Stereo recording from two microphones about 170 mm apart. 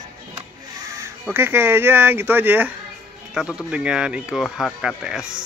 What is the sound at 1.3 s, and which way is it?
Speech, 15° right (ahead or behind).